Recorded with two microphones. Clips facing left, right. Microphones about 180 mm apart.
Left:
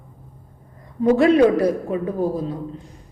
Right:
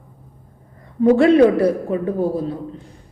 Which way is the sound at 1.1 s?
30° right (ahead or behind).